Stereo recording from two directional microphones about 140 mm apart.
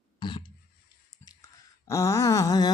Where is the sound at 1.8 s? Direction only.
20° left (ahead or behind).